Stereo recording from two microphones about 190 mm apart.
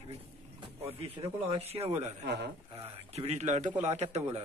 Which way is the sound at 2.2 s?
65° right (ahead or behind).